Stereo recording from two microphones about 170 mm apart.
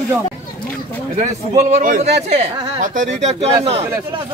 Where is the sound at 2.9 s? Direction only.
45° right (ahead or behind).